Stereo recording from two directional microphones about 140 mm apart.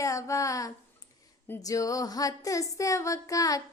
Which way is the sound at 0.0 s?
20° left (ahead or behind).